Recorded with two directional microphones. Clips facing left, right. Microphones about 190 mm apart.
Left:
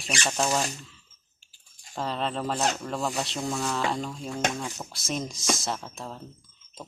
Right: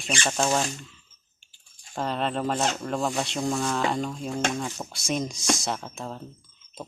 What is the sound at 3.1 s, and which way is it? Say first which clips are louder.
Speech: right 3 dB; 15° right (ahead or behind).